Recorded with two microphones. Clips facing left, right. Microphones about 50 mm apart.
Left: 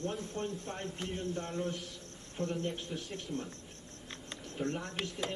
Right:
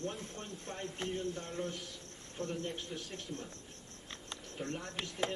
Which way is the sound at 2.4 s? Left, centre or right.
Centre.